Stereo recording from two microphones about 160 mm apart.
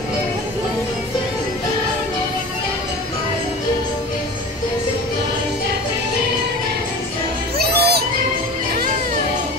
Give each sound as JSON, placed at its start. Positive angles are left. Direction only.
{"t": 7.5, "sound": "music", "side_deg": -80}